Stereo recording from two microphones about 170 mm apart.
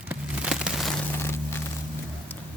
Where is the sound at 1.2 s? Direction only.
15° left (ahead or behind).